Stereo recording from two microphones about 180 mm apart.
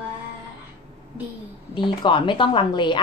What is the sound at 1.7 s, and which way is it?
A woman's voice, 25° left (ahead or behind).